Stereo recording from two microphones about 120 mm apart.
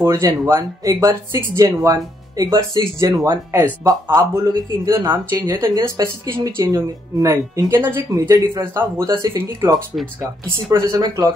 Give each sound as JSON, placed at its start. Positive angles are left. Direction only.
{"t": 0.0, "sound": "speech", "side_deg": -30}
{"t": 5.0, "sound": "speech", "side_deg": -35}
{"t": 9.9, "sound": "speech", "side_deg": 0}
{"t": 10.7, "sound": "speech", "side_deg": -30}